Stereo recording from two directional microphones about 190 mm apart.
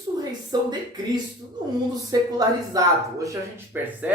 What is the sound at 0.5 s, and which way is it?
Speech, 20° right (ahead or behind).